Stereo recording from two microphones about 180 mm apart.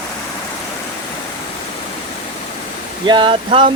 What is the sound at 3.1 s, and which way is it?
Speech, 25° right (ahead or behind).